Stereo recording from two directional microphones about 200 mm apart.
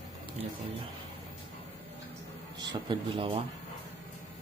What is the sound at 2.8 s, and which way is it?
Speech, 25° right (ahead or behind).